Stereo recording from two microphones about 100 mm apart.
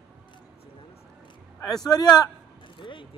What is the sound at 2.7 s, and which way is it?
Speech, 55° left (ahead or behind).